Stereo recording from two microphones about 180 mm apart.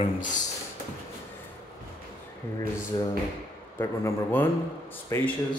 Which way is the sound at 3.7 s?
15° left (ahead or behind).